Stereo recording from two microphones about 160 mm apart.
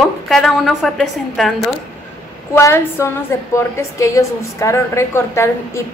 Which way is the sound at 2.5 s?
15° left (ahead or behind).